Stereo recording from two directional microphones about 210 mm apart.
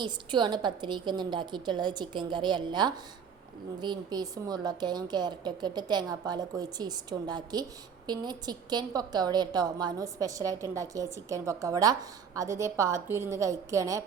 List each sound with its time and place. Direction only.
0.0 s a woman's voice: 20° right (ahead or behind)